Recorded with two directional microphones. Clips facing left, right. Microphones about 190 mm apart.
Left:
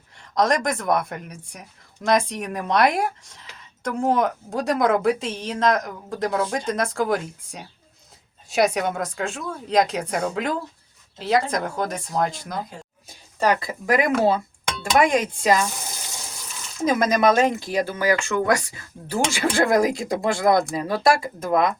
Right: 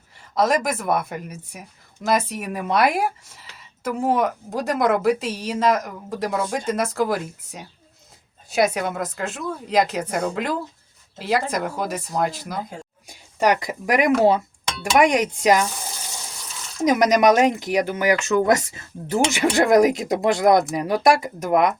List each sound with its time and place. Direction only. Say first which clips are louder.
0.2 s speech: right 1 dB; 5° right (ahead or behind)
13.1 s speech: right 2 dB; 15° right (ahead or behind)
16.8 s speech: right 3 dB; 20° right (ahead or behind)